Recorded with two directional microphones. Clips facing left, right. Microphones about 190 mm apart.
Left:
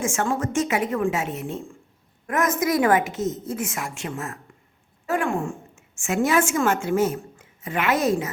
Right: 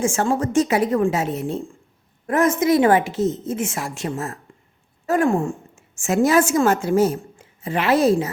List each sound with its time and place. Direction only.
0.0 s a woman's voice: 35° right (ahead or behind)